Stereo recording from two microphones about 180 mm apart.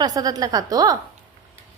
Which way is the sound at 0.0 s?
20° right (ahead or behind).